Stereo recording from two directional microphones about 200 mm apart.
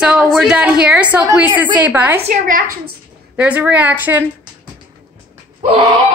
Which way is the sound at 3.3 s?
5° right (ahead or behind).